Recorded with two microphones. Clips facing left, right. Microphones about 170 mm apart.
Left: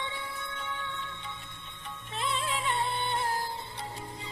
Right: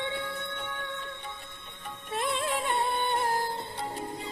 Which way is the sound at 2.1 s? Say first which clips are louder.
Right 3 dB; 50° right (ahead or behind).